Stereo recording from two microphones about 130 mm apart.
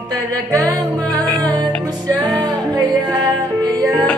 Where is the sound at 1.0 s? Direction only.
30° right (ahead or behind).